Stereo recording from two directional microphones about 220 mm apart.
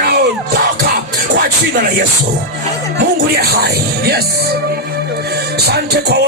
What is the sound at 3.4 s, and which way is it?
Music, 45° right (ahead or behind).